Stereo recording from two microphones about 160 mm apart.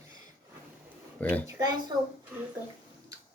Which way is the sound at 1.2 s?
10° left (ahead or behind).